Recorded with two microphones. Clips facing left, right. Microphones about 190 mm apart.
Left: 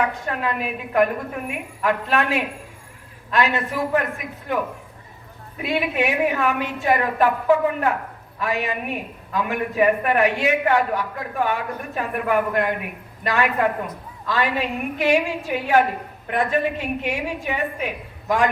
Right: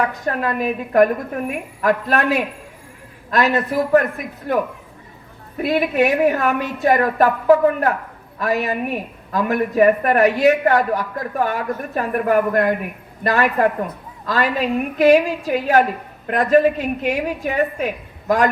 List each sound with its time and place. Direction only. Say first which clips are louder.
0.0 s a man's voice: right 3 dB; 40° right (ahead or behind)